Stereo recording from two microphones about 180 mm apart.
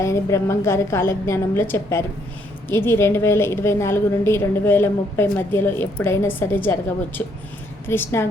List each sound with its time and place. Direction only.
0.0 s a woman's voice: 15° left (ahead or behind)